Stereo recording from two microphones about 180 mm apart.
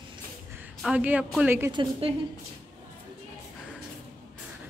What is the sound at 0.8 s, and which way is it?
Speech, 5° right (ahead or behind).